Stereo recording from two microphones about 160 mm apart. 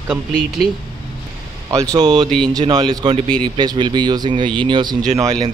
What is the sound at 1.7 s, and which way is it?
Speech, 20° right (ahead or behind).